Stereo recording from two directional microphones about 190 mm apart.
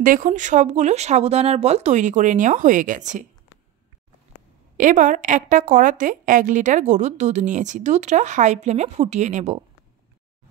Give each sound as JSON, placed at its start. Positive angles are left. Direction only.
{"t": 0.0, "sound": "a woman's voice", "side_deg": -45}
{"t": 4.7, "sound": "a woman's voice", "side_deg": -45}